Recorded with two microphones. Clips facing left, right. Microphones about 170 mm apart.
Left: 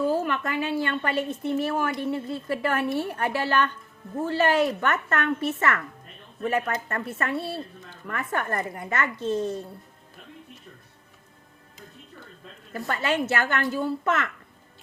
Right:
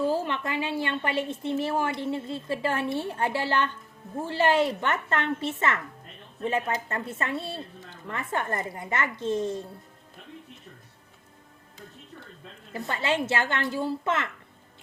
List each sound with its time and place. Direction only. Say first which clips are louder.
0.1 s a woman's voice: left 2 dB; 25° right (ahead or behind)
12.7 s a woman's voice: left 1 dB; 20° right (ahead or behind)